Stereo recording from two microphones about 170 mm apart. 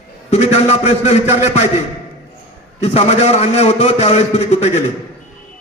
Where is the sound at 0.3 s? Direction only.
40° left (ahead or behind).